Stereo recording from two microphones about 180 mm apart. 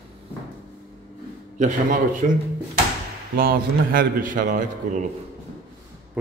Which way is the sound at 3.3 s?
55° right (ahead or behind).